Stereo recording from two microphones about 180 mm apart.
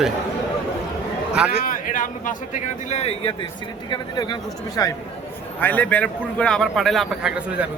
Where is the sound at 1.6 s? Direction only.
50° left (ahead or behind).